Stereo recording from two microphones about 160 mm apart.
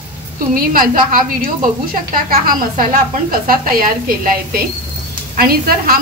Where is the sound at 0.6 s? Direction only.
60° right (ahead or behind).